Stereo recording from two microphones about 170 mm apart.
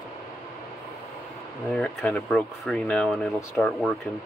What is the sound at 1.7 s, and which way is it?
Speech, 5° left (ahead or behind).